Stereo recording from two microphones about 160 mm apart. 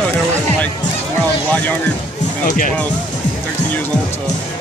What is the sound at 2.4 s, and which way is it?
Speech, 55° left (ahead or behind).